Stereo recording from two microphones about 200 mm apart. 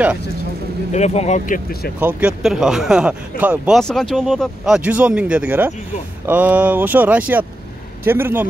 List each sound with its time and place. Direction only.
0.9 s speech: 35° left (ahead or behind)
2.0 s speech: 10° right (ahead or behind)